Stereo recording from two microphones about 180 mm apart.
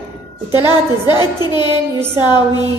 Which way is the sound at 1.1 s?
25° left (ahead or behind).